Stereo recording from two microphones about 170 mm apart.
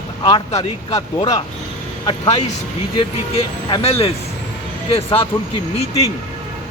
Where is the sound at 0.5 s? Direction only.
40° left (ahead or behind).